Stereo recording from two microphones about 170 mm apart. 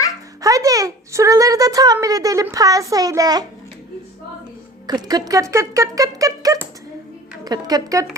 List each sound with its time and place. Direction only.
0.4 s a woman's voice: 20° right (ahead or behind)
4.9 s a woman's voice: 20° right (ahead or behind)